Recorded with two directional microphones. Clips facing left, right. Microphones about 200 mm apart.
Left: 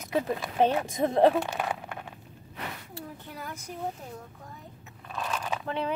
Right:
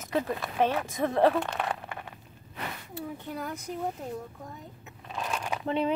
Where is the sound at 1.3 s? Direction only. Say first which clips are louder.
Left 1 dB; 5° left (ahead or behind).